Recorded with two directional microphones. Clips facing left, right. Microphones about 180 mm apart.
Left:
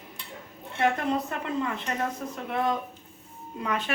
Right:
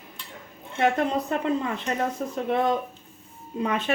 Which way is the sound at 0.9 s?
25° right (ahead or behind).